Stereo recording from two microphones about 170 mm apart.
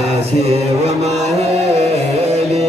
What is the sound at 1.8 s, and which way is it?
Music, 40° right (ahead or behind).